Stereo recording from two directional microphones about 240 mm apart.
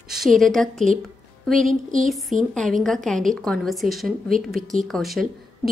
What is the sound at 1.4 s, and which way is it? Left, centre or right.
Music, centre.